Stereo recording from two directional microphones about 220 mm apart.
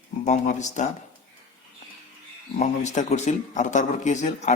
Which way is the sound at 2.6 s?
35° left (ahead or behind).